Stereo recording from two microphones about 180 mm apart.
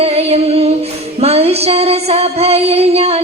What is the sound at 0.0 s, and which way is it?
Singing, 35° right (ahead or behind).